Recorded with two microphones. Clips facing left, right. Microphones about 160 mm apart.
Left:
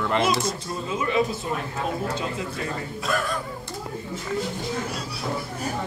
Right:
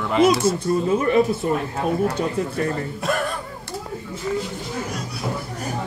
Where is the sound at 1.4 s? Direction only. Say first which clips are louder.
Right 6 dB; 45° right (ahead or behind).